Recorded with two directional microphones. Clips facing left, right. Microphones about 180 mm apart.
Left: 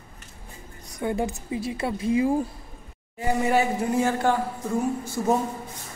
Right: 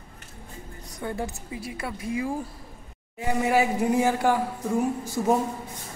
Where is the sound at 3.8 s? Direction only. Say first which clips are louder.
Right 1 dB; 15° right (ahead or behind).